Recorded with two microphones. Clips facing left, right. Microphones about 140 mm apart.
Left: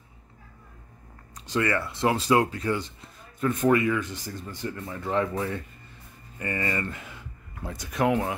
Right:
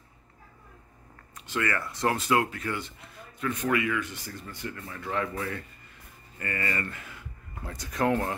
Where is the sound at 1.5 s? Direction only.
25° left (ahead or behind).